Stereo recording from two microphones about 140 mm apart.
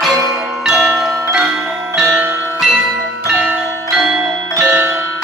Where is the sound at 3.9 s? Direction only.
5° right (ahead or behind).